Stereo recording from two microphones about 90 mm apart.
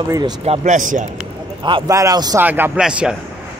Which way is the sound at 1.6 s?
65° right (ahead or behind).